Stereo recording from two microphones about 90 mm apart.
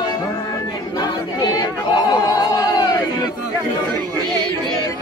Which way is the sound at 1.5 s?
50° left (ahead or behind).